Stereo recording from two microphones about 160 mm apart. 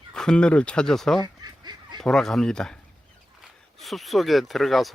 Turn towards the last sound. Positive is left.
turn(degrees=0)  # may be behind; listen again after turning